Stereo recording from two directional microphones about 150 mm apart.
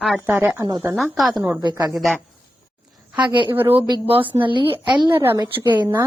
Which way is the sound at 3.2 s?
30° right (ahead or behind).